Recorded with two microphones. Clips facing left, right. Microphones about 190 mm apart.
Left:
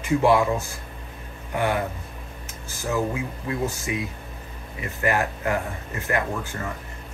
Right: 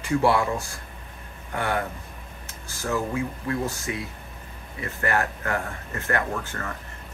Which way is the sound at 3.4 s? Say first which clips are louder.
Left 1 dB; 15° left (ahead or behind).